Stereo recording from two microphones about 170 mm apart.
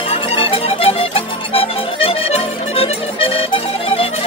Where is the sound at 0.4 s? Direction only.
35° left (ahead or behind).